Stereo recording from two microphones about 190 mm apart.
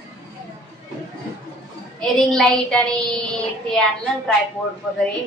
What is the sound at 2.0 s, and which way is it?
A child's voice, 5° left (ahead or behind).